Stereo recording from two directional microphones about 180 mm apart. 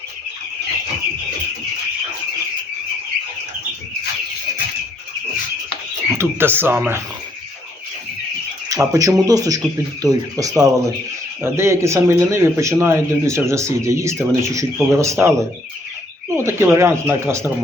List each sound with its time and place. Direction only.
6.1 s speech: 10° right (ahead or behind)
8.7 s speech: 20° right (ahead or behind)
16.4 s speech: 15° right (ahead or behind)